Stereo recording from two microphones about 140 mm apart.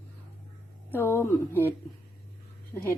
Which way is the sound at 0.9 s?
15° left (ahead or behind).